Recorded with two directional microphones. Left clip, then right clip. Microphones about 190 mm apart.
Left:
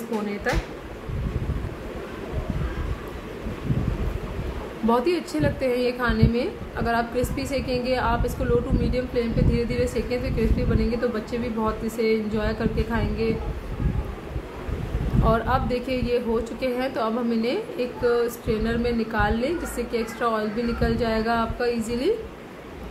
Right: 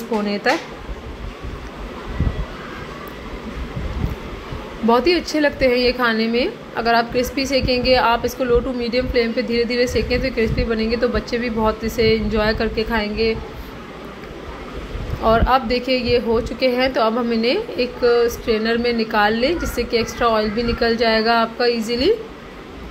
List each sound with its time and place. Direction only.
0.3 s speech: 25° right (ahead or behind)
4.8 s speech: 15° right (ahead or behind)
15.2 s speech: 15° right (ahead or behind)